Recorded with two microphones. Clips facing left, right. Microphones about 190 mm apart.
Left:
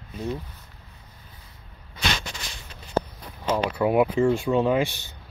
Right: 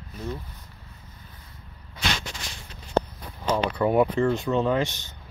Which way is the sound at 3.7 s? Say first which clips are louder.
Even; 10° left (ahead or behind).